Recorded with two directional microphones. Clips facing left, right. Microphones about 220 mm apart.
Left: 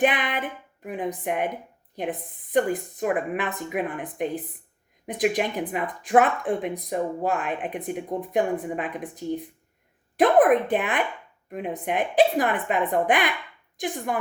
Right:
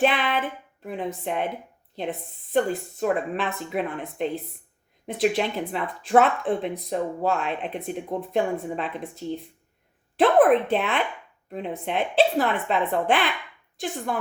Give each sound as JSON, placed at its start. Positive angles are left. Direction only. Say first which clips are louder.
{"t": 0.0, "sound": "speech", "louder": "right 1 dB", "side_deg": 15}